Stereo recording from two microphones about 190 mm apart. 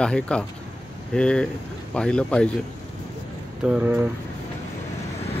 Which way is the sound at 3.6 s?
5° right (ahead or behind).